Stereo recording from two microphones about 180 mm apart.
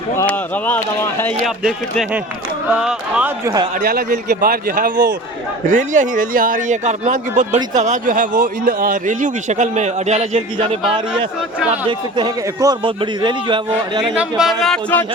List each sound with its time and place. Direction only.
0.2 s speech: 10° left (ahead or behind)
1.5 s speech: centre (ahead or behind); by 3.7 s 20° right (ahead or behind)
3.8 s speech: 55° right (ahead or behind); by 10.8 s 35° right (ahead or behind)
11.9 s a man's voice: 25° right (ahead or behind)
14.2 s speech: centre (ahead or behind)